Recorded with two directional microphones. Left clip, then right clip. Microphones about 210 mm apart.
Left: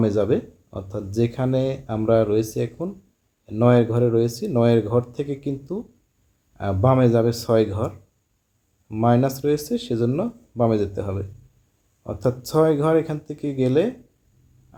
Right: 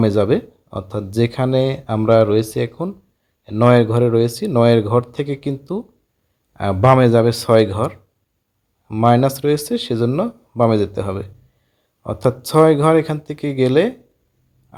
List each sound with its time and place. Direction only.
0.0 s speech: 20° right (ahead or behind)